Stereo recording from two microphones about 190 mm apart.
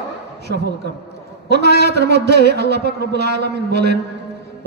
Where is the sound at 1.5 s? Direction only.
60° right (ahead or behind).